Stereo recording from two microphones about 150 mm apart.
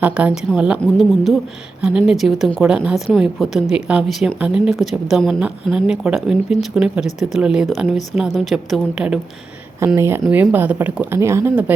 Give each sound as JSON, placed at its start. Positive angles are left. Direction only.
{"t": 0.0, "sound": "a woman's voice", "side_deg": -10}
{"t": 9.8, "sound": "a woman's voice", "side_deg": -15}